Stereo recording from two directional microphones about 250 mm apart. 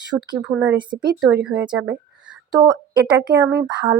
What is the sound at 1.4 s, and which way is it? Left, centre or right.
Speech, centre.